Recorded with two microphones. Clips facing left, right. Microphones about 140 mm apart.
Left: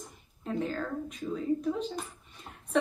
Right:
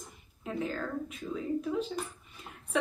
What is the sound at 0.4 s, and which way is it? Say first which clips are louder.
A woman's voice: left 2 dB; centre (ahead or behind).